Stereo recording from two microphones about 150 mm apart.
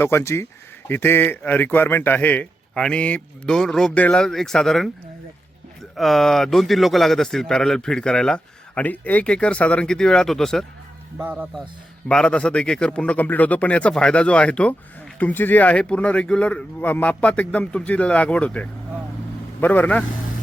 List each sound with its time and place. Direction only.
0.0 s a man's voice: 15° left (ahead or behind)
6.0 s speech: centre (ahead or behind)
11.2 s speech: 15° right (ahead or behind)
12.0 s a man's voice: 5° left (ahead or behind)